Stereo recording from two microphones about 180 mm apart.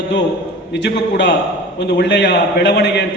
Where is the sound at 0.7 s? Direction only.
70° left (ahead or behind).